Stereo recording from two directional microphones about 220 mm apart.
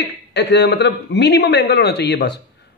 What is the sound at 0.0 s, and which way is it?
A man's voice, 50° left (ahead or behind).